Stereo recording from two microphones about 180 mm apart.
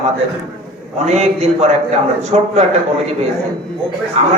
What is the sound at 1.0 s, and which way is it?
A man's voice, 40° right (ahead or behind).